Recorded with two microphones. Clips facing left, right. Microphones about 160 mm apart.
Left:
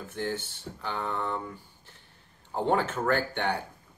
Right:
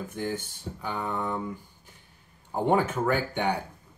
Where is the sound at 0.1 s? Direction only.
10° right (ahead or behind).